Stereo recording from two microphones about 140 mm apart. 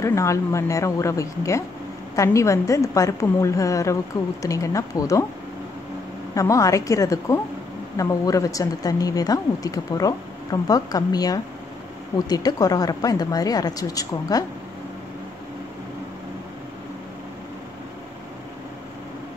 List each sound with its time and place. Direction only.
0.0 s a woman's voice: 20° left (ahead or behind)
6.3 s a woman's voice: 25° left (ahead or behind)